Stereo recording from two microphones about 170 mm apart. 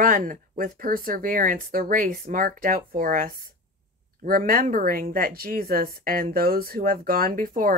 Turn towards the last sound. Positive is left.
turn(degrees=-55)  # may be behind; listen again after turning